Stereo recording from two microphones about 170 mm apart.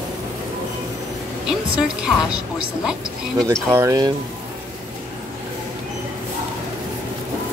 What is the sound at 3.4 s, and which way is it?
Speech, 15° right (ahead or behind).